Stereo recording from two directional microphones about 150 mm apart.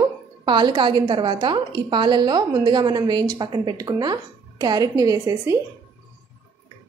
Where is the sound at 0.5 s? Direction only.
30° right (ahead or behind).